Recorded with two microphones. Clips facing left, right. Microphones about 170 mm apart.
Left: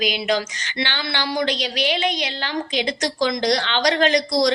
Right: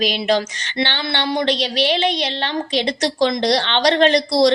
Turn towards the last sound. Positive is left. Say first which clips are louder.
# right 4 dB
turn(degrees=-30)  # may be behind; listen again after turning